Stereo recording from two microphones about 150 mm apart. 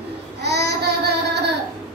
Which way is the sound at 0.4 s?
90° right.